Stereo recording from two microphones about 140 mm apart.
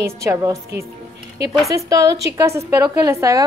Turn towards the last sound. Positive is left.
turn(degrees=-25)  # may be behind; listen again after turning